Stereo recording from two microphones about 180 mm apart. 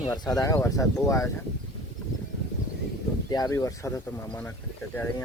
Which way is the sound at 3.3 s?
20° left (ahead or behind).